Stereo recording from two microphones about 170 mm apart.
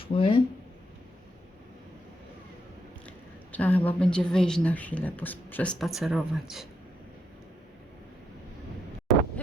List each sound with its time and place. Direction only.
0.0 s speech: 30° left (ahead or behind)
3.5 s a woman's voice: 10° left (ahead or behind)
5.8 s speech: centre (ahead or behind)
9.1 s wind noise: centre (ahead or behind)